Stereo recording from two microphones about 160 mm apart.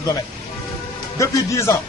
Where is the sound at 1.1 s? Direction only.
20° left (ahead or behind).